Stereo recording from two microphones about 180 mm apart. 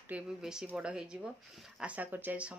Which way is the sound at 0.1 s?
5° right (ahead or behind).